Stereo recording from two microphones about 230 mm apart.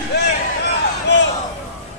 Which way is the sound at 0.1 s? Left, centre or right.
Left.